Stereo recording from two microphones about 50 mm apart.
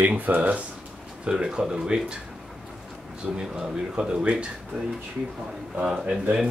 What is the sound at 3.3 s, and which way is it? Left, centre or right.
Speech, centre.